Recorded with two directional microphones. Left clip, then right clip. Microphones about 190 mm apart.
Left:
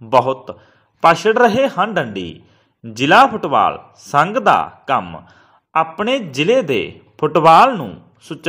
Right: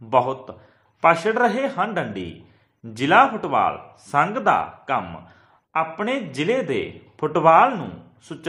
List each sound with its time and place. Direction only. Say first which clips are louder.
0.1 s a man's voice: left 6 dB; 25° left (ahead or behind)